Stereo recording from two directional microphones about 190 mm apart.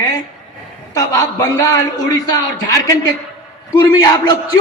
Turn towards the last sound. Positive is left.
turn(degrees=20)  # may be behind; listen again after turning